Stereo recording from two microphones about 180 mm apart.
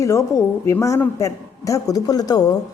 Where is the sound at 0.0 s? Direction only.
15° left (ahead or behind).